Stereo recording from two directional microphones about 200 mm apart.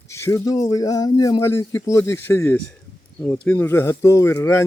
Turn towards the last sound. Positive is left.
turn(degrees=10)  # may be behind; listen again after turning